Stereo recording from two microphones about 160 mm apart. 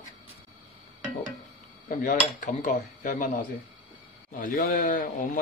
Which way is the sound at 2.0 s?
55° left (ahead or behind).